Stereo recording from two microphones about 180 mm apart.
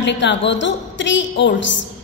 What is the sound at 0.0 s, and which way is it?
A woman's voice, 80° left.